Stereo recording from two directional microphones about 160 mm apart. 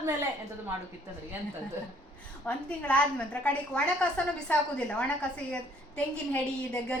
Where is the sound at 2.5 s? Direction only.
5° left (ahead or behind).